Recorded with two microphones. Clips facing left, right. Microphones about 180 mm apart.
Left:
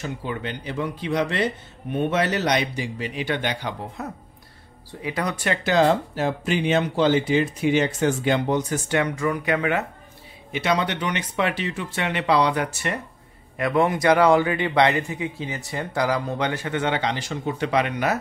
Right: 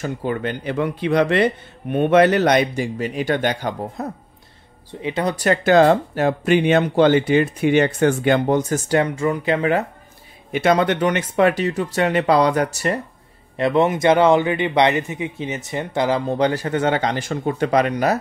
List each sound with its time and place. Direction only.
0.0 s speech: 50° right (ahead or behind)
5.0 s speech: 25° right (ahead or behind)
10.5 s speech: 50° right (ahead or behind)
13.6 s speech: 25° right (ahead or behind)